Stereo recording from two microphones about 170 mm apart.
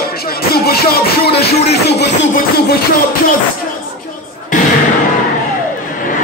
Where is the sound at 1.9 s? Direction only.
90° left.